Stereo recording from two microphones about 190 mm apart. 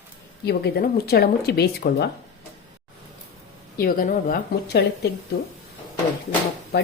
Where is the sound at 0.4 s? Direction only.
55° left (ahead or behind).